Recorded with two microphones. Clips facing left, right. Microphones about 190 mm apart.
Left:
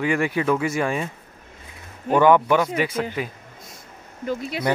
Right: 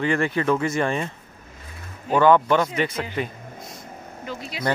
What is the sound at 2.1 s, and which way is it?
Speech, 10° left (ahead or behind).